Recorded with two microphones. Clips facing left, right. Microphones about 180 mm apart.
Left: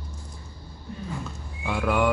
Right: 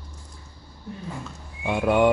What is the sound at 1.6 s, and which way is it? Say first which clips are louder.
Speech: right 4 dB; 20° right (ahead or behind).